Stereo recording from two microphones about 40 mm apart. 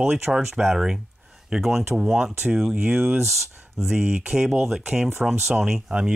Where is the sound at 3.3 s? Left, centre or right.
Centre.